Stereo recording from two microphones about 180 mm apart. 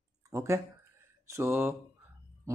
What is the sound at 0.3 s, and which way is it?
Speech, 15° right (ahead or behind).